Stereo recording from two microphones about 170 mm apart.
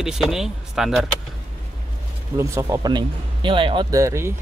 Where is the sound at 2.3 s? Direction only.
15° right (ahead or behind).